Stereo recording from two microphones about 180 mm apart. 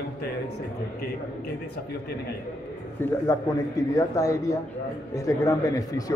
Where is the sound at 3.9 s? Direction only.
20° left (ahead or behind).